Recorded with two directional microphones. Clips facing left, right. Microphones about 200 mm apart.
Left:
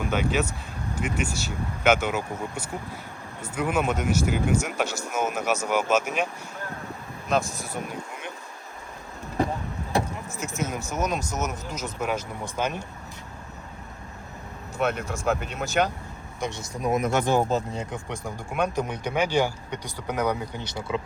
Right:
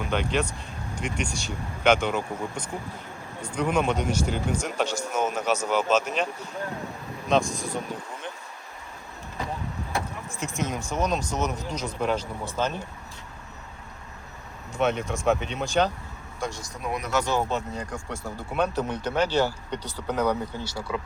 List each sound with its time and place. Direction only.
0.1 s speech: 5° left (ahead or behind)
7.3 s speech: 5° left (ahead or behind)
10.4 s speech: 5° left (ahead or behind)
14.8 s speech: centre (ahead or behind)
16.4 s speech: 20° left (ahead or behind)
17.0 s speech: 50° left (ahead or behind)
17.9 s speech: 15° left (ahead or behind)